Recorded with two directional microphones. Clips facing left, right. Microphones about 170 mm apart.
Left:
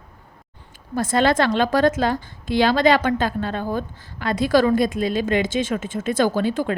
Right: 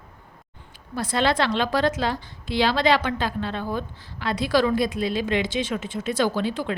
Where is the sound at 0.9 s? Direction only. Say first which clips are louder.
Left 4 dB; 45° left (ahead or behind).